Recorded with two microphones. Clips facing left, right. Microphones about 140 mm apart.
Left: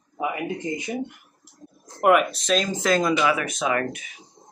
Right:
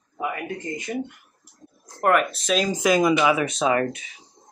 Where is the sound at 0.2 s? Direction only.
15° left (ahead or behind).